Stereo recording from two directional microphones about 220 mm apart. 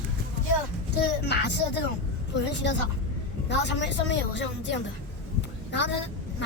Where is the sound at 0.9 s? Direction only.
50° left (ahead or behind).